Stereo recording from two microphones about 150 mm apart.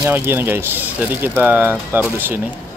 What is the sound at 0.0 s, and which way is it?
Speech, 15° right (ahead or behind).